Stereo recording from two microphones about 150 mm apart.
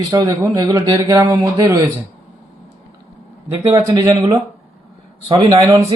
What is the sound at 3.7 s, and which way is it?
Speech, 30° right (ahead or behind).